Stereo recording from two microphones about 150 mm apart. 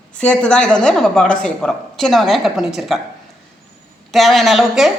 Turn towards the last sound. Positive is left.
turn(degrees=0)  # may be behind; listen again after turning